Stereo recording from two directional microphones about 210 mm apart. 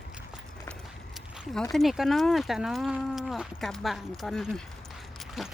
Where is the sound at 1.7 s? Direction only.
Centre (ahead or behind).